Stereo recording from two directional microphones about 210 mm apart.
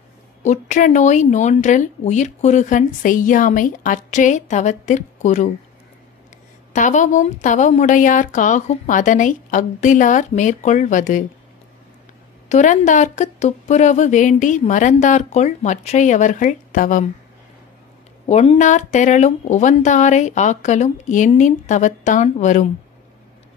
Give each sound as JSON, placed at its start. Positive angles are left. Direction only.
{"t": 0.4, "sound": "speech", "side_deg": 35}
{"t": 6.7, "sound": "speech", "side_deg": 35}
{"t": 12.4, "sound": "speech", "side_deg": 35}
{"t": 18.2, "sound": "speech", "side_deg": 30}